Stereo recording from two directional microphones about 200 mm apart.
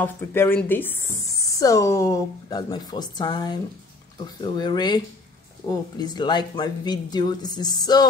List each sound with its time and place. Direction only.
0.0 s speech: 10° left (ahead or behind)